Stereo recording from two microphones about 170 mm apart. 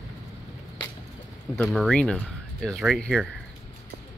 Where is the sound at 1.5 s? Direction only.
Centre (ahead or behind).